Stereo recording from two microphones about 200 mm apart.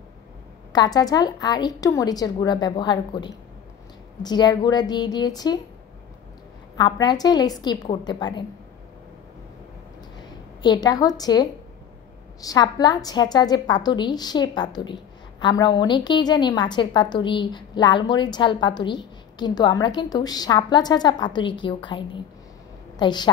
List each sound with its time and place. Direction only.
0.7 s a woman's voice: 20° left (ahead or behind)
6.8 s a woman's voice: 20° left (ahead or behind)
10.6 s a woman's voice: 20° left (ahead or behind)